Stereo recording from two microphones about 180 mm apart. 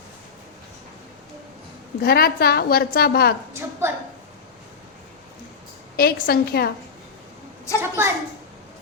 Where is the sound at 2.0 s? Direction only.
55° left (ahead or behind).